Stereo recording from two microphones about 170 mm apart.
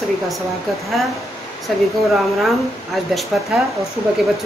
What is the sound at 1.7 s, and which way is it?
Speech, centre (ahead or behind).